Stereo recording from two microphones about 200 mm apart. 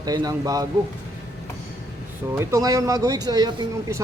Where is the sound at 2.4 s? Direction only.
15° right (ahead or behind).